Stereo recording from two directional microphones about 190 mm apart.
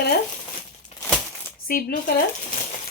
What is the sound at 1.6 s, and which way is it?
Speech, 50° left (ahead or behind).